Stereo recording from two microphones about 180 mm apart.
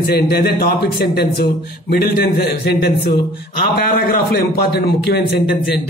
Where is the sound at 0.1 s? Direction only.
60° left (ahead or behind).